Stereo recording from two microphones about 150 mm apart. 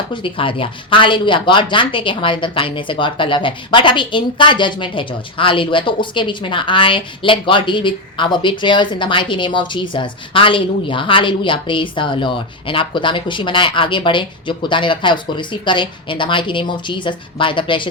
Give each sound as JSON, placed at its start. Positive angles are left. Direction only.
{"t": 0.1, "sound": "speech", "side_deg": 35}